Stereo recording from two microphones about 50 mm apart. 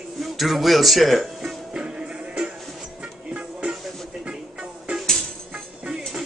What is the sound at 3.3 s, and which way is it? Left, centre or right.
Music, right.